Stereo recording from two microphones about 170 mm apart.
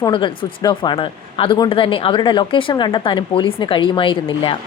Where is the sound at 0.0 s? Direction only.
25° left (ahead or behind).